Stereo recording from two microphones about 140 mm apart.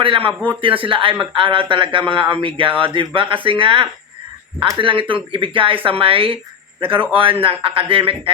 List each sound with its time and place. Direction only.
0.0 s speech: 40° right (ahead or behind)